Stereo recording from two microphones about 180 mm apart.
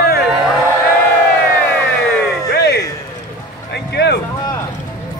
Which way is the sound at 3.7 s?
65° left (ahead or behind).